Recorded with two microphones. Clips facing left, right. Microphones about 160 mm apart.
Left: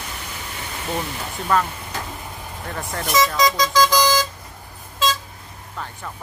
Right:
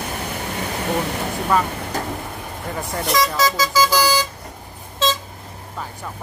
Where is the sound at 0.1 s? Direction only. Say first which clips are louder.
Right 7 dB; 55° right (ahead or behind).